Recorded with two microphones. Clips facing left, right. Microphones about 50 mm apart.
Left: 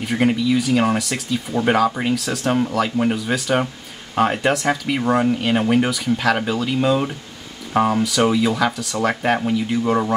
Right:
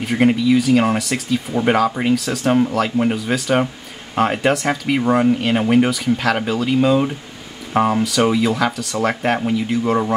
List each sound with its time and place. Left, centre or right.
0.0 s speech: centre